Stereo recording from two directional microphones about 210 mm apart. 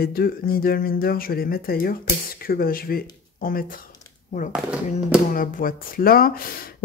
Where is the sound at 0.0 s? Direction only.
45° left (ahead or behind).